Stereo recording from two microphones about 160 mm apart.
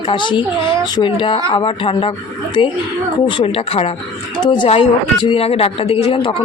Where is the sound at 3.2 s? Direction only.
35° left (ahead or behind).